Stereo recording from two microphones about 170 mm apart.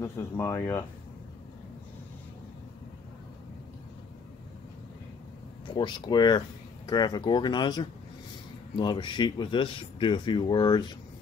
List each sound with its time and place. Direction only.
0.0 s speech: 15° left (ahead or behind)
5.7 s speech: 25° left (ahead or behind)